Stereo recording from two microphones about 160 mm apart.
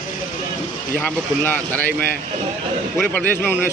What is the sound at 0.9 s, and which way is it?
Speech, 10° left (ahead or behind).